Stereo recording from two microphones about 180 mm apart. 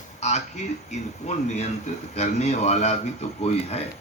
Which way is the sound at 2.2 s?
40° left (ahead or behind).